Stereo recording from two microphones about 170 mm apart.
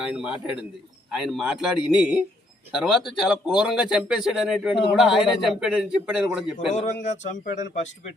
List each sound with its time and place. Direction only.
0.0 s speech: 5° right (ahead or behind)
6.7 s speech: 45° left (ahead or behind)